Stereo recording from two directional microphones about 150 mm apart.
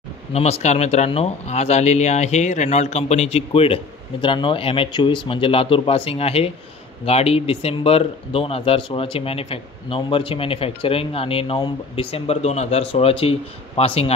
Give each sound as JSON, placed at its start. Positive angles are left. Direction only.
{"t": 0.3, "sound": "speech", "side_deg": 45}